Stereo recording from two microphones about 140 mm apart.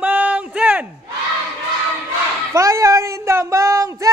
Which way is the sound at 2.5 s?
20° right (ahead or behind).